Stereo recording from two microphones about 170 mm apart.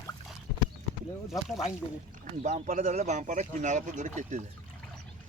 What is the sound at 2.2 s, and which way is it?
Speech, 45° right (ahead or behind).